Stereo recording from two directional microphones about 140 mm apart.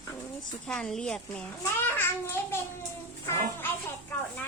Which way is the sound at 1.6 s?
15° left (ahead or behind).